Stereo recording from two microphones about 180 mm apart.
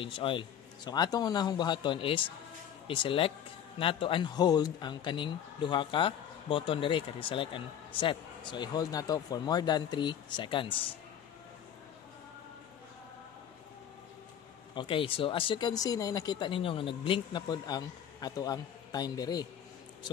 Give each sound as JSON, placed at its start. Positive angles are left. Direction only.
{"t": 0.0, "sound": "speech", "side_deg": 30}
{"t": 14.8, "sound": "speech", "side_deg": 30}